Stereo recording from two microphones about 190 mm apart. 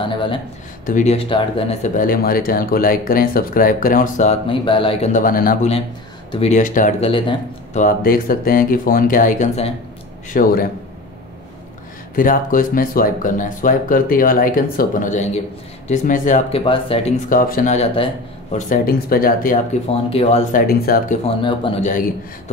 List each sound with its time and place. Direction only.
0.0 s speech: 25° left (ahead or behind)
0.8 s speech: 40° left (ahead or behind)
5.1 s speech: 50° left (ahead or behind)
6.3 s speech: 35° left (ahead or behind)
7.1 s speech: 25° left (ahead or behind)
7.7 s speech: 45° left (ahead or behind)
12.2 s speech: 45° left (ahead or behind)
16.6 s speech: 30° left (ahead or behind)
17.3 s speech: 45° left (ahead or behind)
17.9 s speech: 30° left (ahead or behind)
20.6 s speech: 50° left (ahead or behind)
21.4 s speech: 25° left (ahead or behind)